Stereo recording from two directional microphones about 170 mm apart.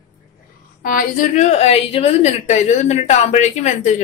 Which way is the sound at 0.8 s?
55° left (ahead or behind).